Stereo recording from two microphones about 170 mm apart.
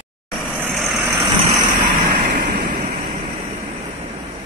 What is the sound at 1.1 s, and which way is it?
Vehicle, 25° right (ahead or behind).